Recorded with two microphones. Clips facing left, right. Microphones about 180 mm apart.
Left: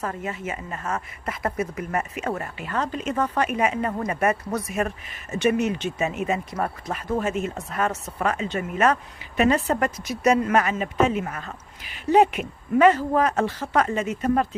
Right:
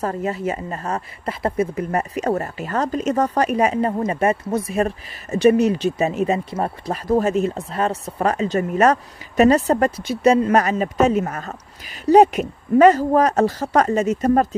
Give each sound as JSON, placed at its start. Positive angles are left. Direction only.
{"t": 0.0, "sound": "a woman's voice", "side_deg": -35}